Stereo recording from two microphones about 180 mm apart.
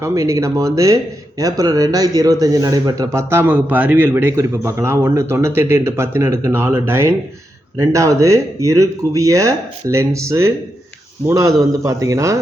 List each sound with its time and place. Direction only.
0.0 s a man's voice: 15° right (ahead or behind)